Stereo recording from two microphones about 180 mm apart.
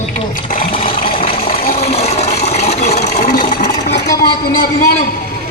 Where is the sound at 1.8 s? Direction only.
35° left (ahead or behind).